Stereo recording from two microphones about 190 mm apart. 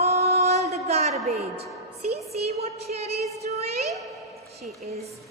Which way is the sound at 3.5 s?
35° right (ahead or behind).